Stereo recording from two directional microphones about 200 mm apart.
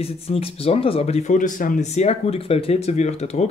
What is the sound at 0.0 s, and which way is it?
Speech, 30° left (ahead or behind).